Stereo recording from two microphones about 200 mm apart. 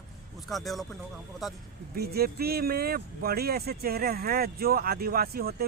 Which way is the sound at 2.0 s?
50° right (ahead or behind).